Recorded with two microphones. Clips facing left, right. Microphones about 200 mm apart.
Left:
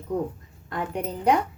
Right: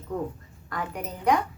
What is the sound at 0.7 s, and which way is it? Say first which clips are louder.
Speech: left 4 dB; 25° left (ahead or behind).